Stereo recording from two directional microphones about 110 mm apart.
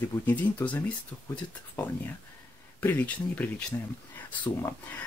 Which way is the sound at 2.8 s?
15° left (ahead or behind).